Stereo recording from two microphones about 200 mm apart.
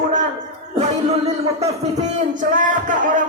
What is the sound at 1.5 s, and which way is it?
A woman's voice, 35° right (ahead or behind).